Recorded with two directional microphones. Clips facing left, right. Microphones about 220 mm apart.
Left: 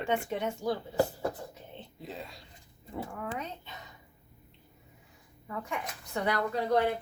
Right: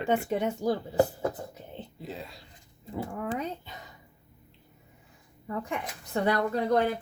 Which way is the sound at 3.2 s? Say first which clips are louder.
Right 7 dB; 35° right (ahead or behind).